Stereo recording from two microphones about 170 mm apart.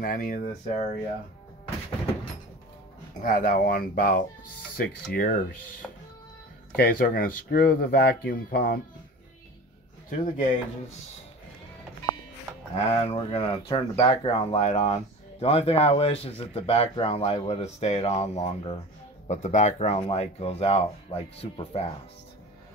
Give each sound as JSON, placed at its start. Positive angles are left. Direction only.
{"t": 0.0, "sound": "speech", "side_deg": 50}
{"t": 3.2, "sound": "speech", "side_deg": 50}
{"t": 6.8, "sound": "speech", "side_deg": 60}
{"t": 10.0, "sound": "speech", "side_deg": 45}
{"t": 12.7, "sound": "speech", "side_deg": 35}